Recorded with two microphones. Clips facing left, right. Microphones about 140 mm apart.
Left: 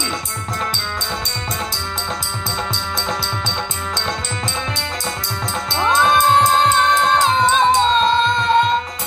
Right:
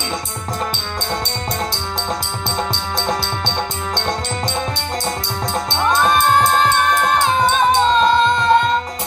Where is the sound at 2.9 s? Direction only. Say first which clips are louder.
Right 4 dB; 35° right (ahead or behind).